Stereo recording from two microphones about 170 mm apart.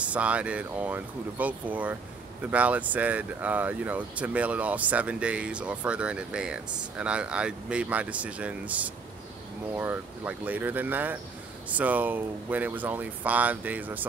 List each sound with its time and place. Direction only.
0.0 s speech: 10° right (ahead or behind)